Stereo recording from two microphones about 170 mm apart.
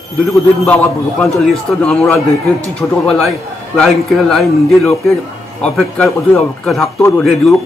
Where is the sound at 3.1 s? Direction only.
5° left (ahead or behind).